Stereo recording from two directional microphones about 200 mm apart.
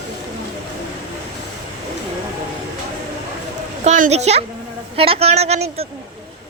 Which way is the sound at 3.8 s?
40° right (ahead or behind).